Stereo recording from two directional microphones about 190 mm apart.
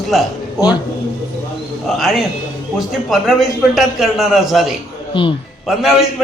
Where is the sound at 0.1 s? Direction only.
Centre (ahead or behind).